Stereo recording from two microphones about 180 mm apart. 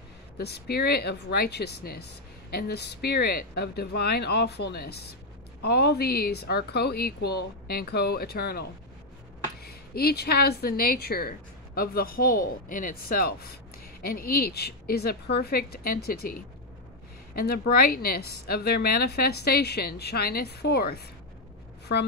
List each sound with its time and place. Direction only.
0.4 s a woman's voice: 65° left (ahead or behind)